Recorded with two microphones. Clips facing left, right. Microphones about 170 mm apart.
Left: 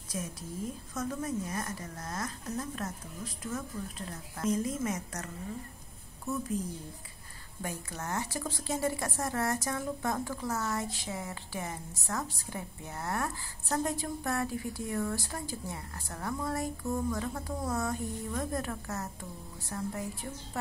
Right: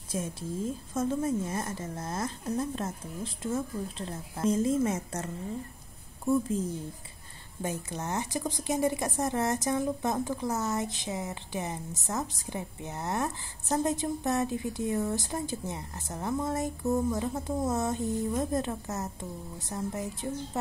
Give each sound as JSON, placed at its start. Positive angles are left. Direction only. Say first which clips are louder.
{"t": 0.1, "sound": "a woman's voice", "louder": "right 5 dB", "side_deg": -30}